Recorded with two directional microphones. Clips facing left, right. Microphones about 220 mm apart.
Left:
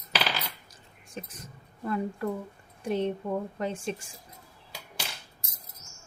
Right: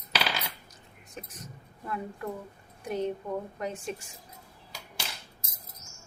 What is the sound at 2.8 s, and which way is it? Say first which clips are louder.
Speech: left 3 dB; 30° left (ahead or behind).